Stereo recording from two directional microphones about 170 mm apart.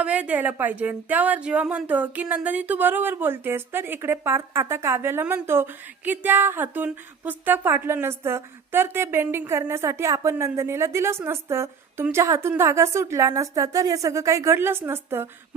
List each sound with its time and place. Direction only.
0.0 s a woman's voice: 10° right (ahead or behind)